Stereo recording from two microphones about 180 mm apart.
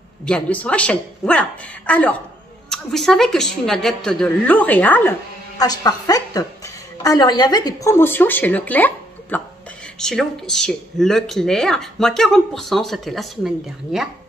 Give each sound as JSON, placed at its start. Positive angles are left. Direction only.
{"t": 0.2, "sound": "a woman's voice", "side_deg": 5}
{"t": 5.6, "sound": "a woman's voice", "side_deg": 20}